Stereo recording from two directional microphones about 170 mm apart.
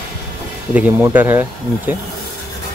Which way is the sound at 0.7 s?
10° right (ahead or behind).